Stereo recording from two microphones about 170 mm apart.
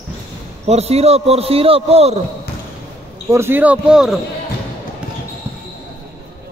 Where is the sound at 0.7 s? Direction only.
40° right (ahead or behind).